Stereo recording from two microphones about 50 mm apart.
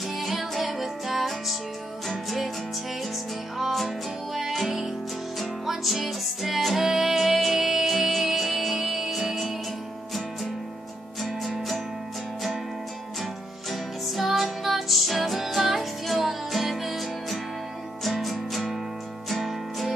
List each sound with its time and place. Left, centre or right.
0.1 s music: centre
3.5 s music: centre
11.2 s music: centre
13.2 s music: centre